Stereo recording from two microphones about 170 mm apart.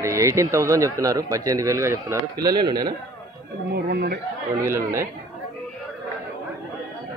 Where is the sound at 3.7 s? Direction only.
80° right.